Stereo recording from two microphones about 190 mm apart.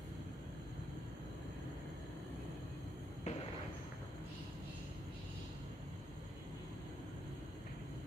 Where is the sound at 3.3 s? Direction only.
40° left (ahead or behind).